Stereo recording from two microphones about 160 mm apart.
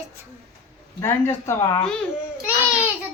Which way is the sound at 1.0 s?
15° left (ahead or behind).